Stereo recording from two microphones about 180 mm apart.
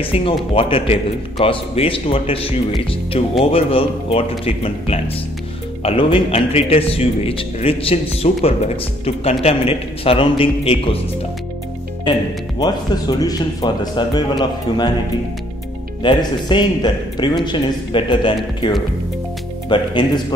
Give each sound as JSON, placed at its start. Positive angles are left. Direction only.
{"t": 0.0, "sound": "a man's voice", "side_deg": 30}
{"t": 12.5, "sound": "speech", "side_deg": 20}
{"t": 16.0, "sound": "speech", "side_deg": 25}